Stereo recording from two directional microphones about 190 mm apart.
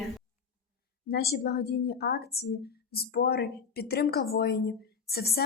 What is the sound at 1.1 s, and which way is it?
Speech, 55° left (ahead or behind).